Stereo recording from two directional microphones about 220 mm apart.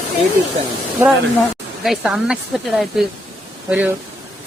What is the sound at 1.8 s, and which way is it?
Speech, centre (ahead or behind).